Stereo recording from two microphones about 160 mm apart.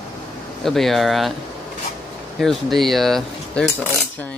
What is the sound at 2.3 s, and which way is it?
Speech, centre (ahead or behind).